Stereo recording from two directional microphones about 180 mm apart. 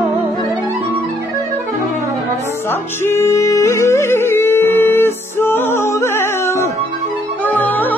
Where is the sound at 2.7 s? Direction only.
15° left (ahead or behind).